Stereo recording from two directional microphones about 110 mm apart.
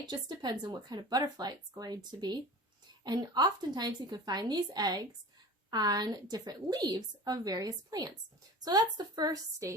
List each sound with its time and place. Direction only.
0.1 s a woman's voice: 40° right (ahead or behind)